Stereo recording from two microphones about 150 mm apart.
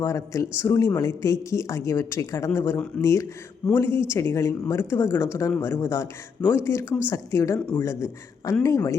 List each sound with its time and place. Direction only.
0.0 s speech: 20° left (ahead or behind)